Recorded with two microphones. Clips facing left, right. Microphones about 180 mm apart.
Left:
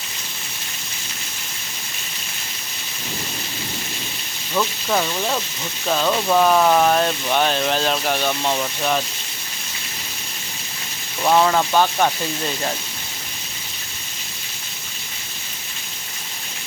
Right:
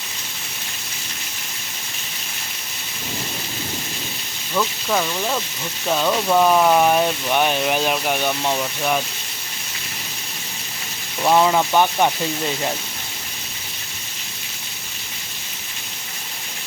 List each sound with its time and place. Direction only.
4.5 s speech: 5° left (ahead or behind)
11.2 s speech: 10° right (ahead or behind)